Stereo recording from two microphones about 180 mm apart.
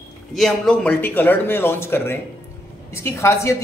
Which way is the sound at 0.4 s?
5° left (ahead or behind).